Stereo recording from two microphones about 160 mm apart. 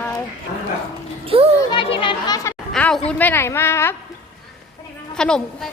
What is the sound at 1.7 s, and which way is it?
Speech, 30° left (ahead or behind).